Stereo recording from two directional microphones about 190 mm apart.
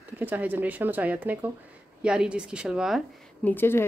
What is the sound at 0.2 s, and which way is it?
A woman's voice, 10° right (ahead or behind).